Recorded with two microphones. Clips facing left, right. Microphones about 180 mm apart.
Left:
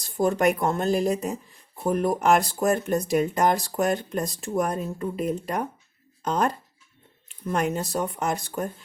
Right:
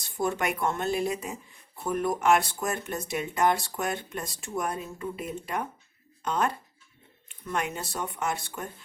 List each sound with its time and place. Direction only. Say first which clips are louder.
0.0 s speech: left 7 dB; 35° left (ahead or behind)